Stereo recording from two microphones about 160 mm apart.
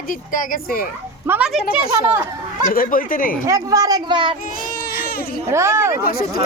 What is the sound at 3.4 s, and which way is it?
Speech, 20° right (ahead or behind).